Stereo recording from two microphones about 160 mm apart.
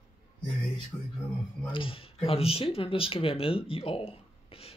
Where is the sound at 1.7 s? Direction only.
35° left (ahead or behind).